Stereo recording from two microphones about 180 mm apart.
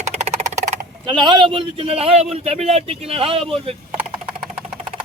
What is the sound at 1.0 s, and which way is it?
A man's voice, 25° right (ahead or behind).